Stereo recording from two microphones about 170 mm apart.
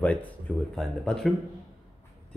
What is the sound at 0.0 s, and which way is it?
Speech, 10° left (ahead or behind).